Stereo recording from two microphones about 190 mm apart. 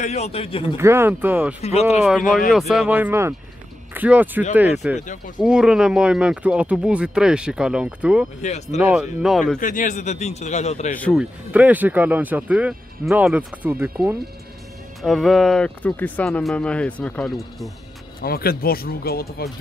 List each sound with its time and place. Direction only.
0.0 s a man's voice: 35° left (ahead or behind)
0.7 s speech: 15° right (ahead or behind)
1.6 s a man's voice: 35° left (ahead or behind)
2.7 s speech: 5° right (ahead or behind)
4.9 s speech: 40° left (ahead or behind)
5.4 s speech: 5° right (ahead or behind)
8.4 s a man's voice: 35° left (ahead or behind)
8.7 s speech: 5° right (ahead or behind)
9.6 s a man's voice: 40° left (ahead or behind)
11.0 s speech: 5° left (ahead or behind)
11.5 s speech: 10° right (ahead or behind)
15.0 s speech: centre (ahead or behind)
18.2 s speech: 50° left (ahead or behind)